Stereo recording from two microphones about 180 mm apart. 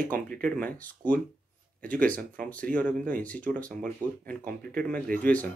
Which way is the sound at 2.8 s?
50° right (ahead or behind).